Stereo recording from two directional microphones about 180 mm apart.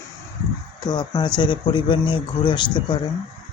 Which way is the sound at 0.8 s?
20° left (ahead or behind).